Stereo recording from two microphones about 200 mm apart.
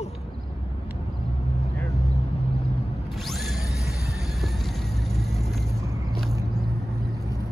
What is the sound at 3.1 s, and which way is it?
Music, centre (ahead or behind).